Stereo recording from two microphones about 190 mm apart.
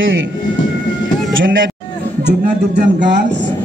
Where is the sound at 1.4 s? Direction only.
80° right.